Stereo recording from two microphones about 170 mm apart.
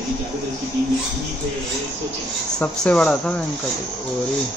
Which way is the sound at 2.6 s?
5° left (ahead or behind).